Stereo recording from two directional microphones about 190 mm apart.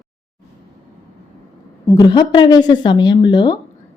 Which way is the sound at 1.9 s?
25° left (ahead or behind).